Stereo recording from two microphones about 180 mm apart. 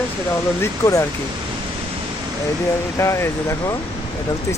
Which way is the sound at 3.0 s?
15° left (ahead or behind).